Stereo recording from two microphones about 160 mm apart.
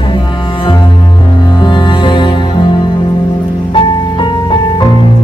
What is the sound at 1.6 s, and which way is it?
Music, 30° left (ahead or behind).